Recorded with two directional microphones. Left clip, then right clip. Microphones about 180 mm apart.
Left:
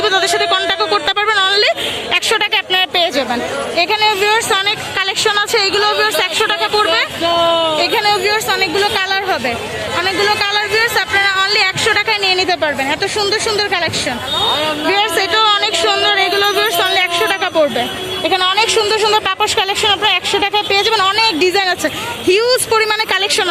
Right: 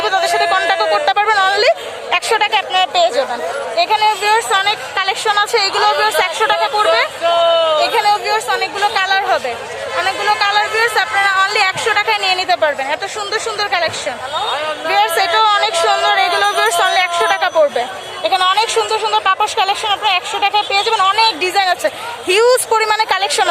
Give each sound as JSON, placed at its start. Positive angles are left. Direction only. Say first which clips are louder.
{"t": 0.0, "sound": "speech", "louder": "even", "side_deg": -10}
{"t": 7.3, "sound": "speech", "louder": "right 1 dB", "side_deg": 45}
{"t": 7.8, "sound": "speech", "louder": "even", "side_deg": -10}
{"t": 14.9, "sound": "speech", "louder": "right 3 dB", "side_deg": -10}
{"t": 18.9, "sound": "speech", "louder": "left 1 dB", "side_deg": 0}
{"t": 22.3, "sound": "a woman's voice", "louder": "right 1 dB", "side_deg": -25}